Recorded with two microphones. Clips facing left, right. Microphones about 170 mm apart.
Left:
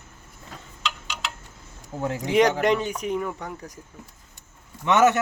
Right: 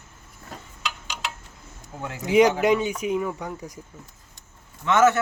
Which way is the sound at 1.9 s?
35° left (ahead or behind).